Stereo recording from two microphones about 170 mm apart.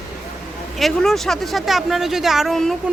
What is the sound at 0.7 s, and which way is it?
Speech, centre (ahead or behind).